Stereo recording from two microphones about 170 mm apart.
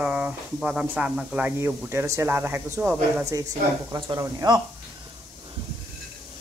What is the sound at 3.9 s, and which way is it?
Speech, 20° right (ahead or behind).